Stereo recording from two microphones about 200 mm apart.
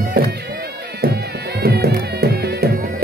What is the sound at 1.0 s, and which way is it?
Music, 50° right (ahead or behind).